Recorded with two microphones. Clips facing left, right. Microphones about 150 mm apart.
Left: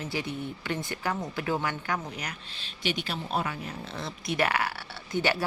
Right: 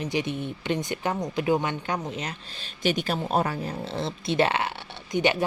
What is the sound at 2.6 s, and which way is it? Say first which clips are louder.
Speech: right 6 dB; 45° right (ahead or behind).